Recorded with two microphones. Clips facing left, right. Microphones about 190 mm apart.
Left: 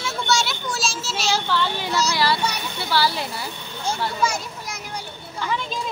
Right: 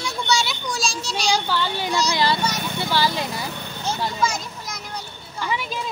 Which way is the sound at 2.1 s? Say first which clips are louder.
Right 1 dB; 20° right (ahead or behind).